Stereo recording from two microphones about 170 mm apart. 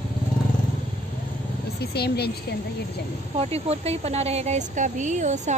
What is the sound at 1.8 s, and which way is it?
Speech, 70° left (ahead or behind).